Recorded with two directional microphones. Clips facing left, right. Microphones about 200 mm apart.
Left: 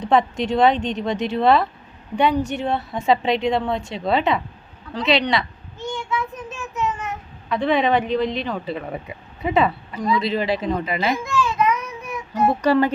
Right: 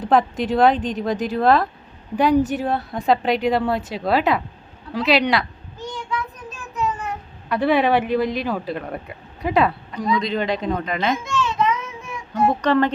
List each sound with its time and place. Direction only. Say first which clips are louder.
0.0 s speech: even; centre (ahead or behind)
7.5 s speech: right 1 dB; 5° right (ahead or behind)
11.3 s child singing: left 1 dB; 25° right (ahead or behind)
12.3 s speech: even; 10° left (ahead or behind)